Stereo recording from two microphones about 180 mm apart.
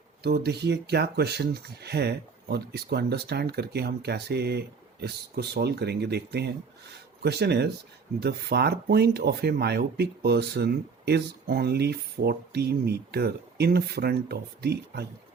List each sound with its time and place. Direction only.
0.2 s speech: 60° right (ahead or behind)